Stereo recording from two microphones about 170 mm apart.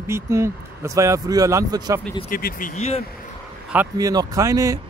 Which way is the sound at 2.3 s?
60° left (ahead or behind).